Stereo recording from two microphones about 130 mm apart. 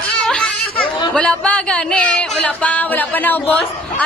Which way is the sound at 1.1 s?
5° left (ahead or behind).